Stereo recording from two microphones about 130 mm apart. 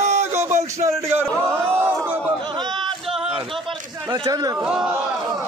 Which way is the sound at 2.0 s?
15° right (ahead or behind).